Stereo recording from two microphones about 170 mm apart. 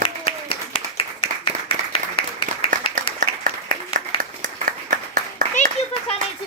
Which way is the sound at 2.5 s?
45° right (ahead or behind).